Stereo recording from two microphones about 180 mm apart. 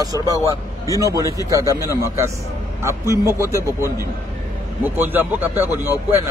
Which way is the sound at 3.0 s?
15° right (ahead or behind).